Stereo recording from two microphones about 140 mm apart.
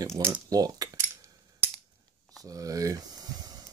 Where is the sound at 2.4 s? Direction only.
25° right (ahead or behind).